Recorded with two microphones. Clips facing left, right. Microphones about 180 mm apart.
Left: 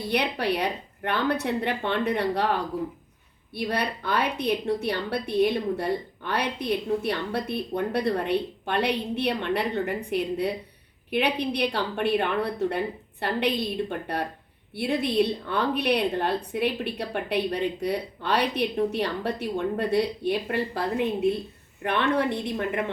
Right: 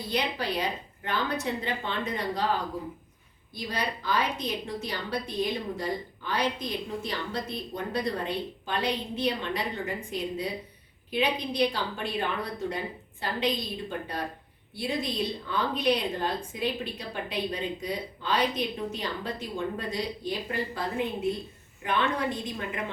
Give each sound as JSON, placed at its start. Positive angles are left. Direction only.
{"t": 0.1, "sound": "a woman's voice", "side_deg": 65}
{"t": 3.5, "sound": "a woman's voice", "side_deg": 65}
{"t": 14.8, "sound": "a woman's voice", "side_deg": 65}
{"t": 21.8, "sound": "a woman's voice", "side_deg": 65}